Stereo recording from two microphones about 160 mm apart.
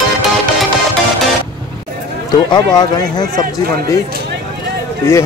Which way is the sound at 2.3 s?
25° left (ahead or behind).